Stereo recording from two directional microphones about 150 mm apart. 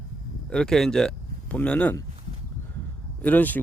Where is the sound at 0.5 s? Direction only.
5° left (ahead or behind).